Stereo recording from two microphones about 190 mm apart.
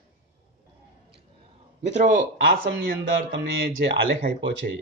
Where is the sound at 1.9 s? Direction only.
40° right (ahead or behind).